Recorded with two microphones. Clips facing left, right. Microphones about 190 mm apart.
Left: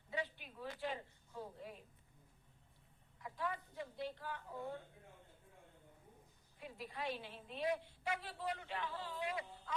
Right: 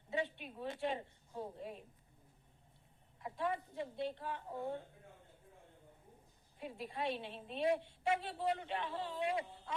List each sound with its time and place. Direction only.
0.3 s a woman's voice: 25° right (ahead or behind)
3.2 s a woman's voice: 25° right (ahead or behind)
6.6 s a woman's voice: 25° right (ahead or behind)